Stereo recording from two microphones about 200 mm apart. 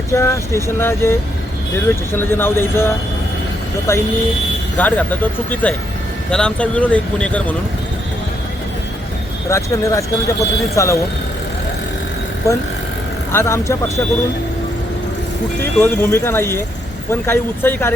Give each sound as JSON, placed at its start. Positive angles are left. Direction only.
{"t": 0.1, "sound": "speech", "side_deg": 15}
{"t": 9.5, "sound": "speech", "side_deg": 15}
{"t": 12.4, "sound": "speech", "side_deg": 15}
{"t": 15.6, "sound": "speech", "side_deg": 10}